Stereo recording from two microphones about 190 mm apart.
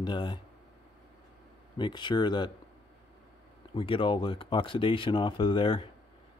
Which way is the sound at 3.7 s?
25° left (ahead or behind).